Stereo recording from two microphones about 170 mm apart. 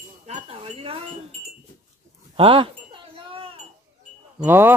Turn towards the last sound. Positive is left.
turn(degrees=-15)  # may be behind; listen again after turning